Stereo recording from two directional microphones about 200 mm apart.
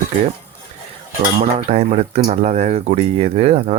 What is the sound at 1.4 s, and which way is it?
Speech, 35° right (ahead or behind).